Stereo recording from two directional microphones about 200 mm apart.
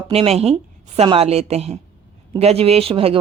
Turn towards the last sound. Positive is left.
turn(degrees=-30)  # may be behind; listen again after turning